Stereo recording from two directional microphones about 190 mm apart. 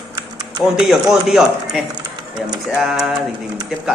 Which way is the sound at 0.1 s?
20° right (ahead or behind).